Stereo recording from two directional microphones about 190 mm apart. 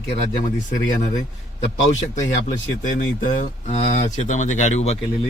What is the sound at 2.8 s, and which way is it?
Speech, 45° left (ahead or behind).